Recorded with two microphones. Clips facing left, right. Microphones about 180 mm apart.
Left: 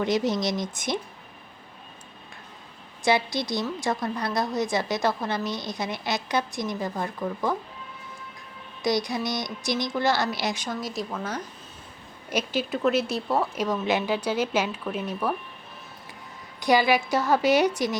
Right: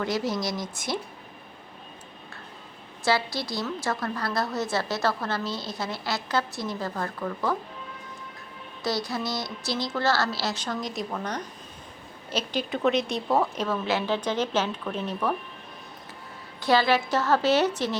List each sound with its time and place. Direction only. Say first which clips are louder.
0.0 s speech: left 3 dB; 20° left (ahead or behind)
3.0 s a woman's voice: left 2 dB; 20° left (ahead or behind)
8.8 s a woman's voice: left 3 dB; 15° left (ahead or behind)
13.7 s a woman's voice: left 1 dB; 15° left (ahead or behind)
16.6 s a woman's voice: left 1 dB; 15° left (ahead or behind)